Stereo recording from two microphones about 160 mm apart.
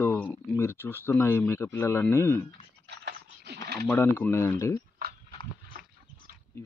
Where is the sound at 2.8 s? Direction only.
90° right.